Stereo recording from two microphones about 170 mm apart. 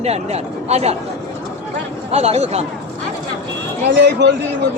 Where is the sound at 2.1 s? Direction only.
40° right (ahead or behind).